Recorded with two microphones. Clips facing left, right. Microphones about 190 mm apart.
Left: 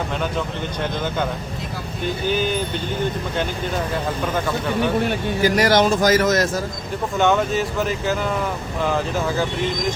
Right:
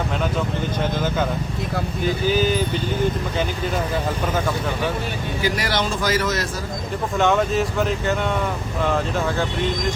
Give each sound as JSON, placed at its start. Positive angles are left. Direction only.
{"t": 2.0, "sound": "speech", "side_deg": 0}
{"t": 5.0, "sound": "speech", "side_deg": 45}
{"t": 7.2, "sound": "speech", "side_deg": 0}